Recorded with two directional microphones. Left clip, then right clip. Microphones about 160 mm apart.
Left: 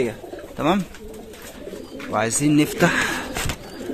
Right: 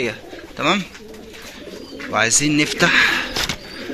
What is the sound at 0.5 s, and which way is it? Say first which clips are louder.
Speech: right 2 dB; 35° left (ahead or behind).